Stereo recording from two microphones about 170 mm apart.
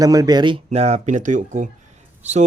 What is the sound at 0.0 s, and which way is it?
Speech, 20° right (ahead or behind).